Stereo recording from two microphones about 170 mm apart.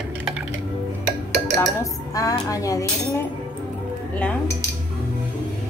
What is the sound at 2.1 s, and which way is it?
A woman's voice, 20° left (ahead or behind).